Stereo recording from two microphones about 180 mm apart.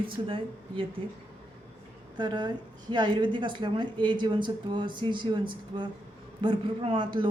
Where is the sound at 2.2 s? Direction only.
25° right (ahead or behind).